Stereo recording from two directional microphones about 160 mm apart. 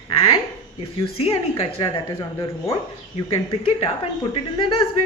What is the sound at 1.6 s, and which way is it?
Speech, 30° left (ahead or behind).